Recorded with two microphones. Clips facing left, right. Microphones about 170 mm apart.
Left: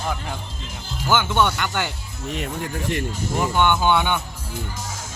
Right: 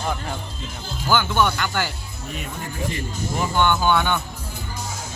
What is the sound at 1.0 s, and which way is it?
Speech, 20° left (ahead or behind).